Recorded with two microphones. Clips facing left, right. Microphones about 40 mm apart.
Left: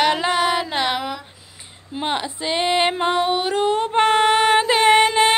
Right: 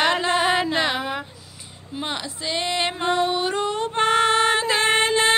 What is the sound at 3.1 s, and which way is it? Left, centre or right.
Female singing, left.